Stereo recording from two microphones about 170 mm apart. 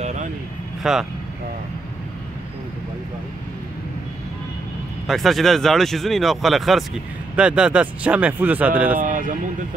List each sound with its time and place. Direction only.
0.0 s vehicle: 45° right (ahead or behind)
0.8 s speech: 5° right (ahead or behind)
5.0 s speech: centre (ahead or behind)
8.9 s speech: 50° right (ahead or behind)